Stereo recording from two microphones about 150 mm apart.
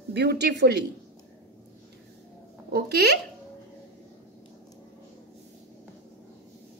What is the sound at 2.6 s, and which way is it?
Speech, 90° right.